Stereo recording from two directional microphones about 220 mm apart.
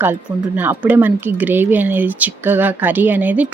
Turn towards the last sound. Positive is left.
turn(degrees=-5)  # may be behind; listen again after turning